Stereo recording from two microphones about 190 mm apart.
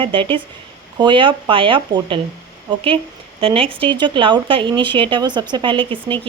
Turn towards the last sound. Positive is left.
turn(degrees=-25)  # may be behind; listen again after turning